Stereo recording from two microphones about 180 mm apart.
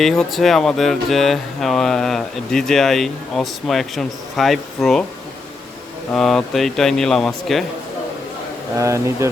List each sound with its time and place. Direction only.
0.0 s speech: centre (ahead or behind)
6.1 s speech: 5° left (ahead or behind)
8.8 s speech: 15° right (ahead or behind)